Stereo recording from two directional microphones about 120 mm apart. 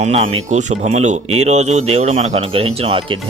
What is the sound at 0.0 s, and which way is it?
Speech, 75° right (ahead or behind).